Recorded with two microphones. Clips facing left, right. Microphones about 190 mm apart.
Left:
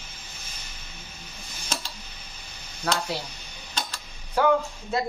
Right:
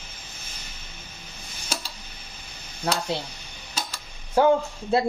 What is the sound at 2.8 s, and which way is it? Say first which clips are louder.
Speech: right 1 dB; 20° right (ahead or behind).